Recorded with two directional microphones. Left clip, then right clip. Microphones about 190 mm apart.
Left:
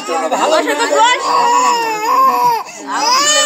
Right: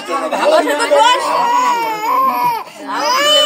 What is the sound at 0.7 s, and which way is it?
Speech, 20° left (ahead or behind).